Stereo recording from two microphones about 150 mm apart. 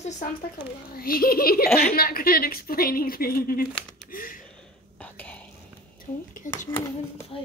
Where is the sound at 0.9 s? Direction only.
80° left.